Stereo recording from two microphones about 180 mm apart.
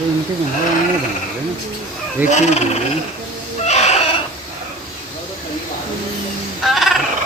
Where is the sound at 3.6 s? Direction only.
35° left (ahead or behind).